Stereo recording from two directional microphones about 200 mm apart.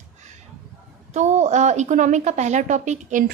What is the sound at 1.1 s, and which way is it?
A woman's voice, 35° right (ahead or behind).